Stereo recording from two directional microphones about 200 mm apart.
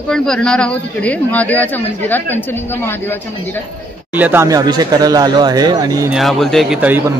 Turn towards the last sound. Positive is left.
turn(degrees=-10)  # may be behind; listen again after turning